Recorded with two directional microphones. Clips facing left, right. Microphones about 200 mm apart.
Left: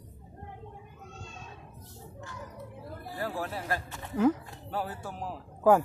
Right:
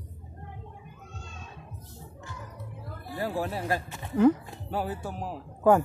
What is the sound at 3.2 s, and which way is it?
Speech, 20° right (ahead or behind).